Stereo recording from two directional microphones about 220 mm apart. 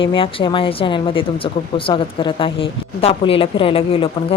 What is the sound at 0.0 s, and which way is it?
A woman's voice, 25° left (ahead or behind).